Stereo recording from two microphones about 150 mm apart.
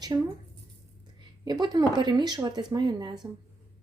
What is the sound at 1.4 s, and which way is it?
A woman's voice, 30° right (ahead or behind).